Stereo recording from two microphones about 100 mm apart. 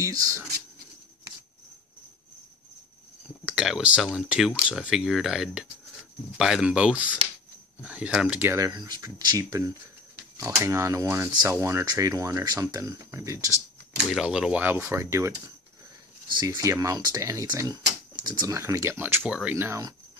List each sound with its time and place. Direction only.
0.0 s speech: 35° right (ahead or behind)
3.4 s speech: 5° right (ahead or behind)
8.5 s speech: 40° right (ahead or behind)
11.8 s speech: 35° right (ahead or behind)
14.1 s speech: 5° right (ahead or behind)
14.9 s speech: 30° right (ahead or behind)
16.4 s speech: 35° right (ahead or behind)
18.5 s speech: 30° right (ahead or behind)
19.2 s speech: 10° right (ahead or behind)
19.5 s speech: 30° right (ahead or behind)